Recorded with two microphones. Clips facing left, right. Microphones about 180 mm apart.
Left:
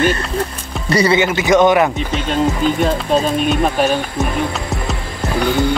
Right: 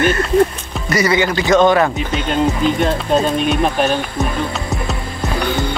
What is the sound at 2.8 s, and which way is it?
Speech, centre (ahead or behind).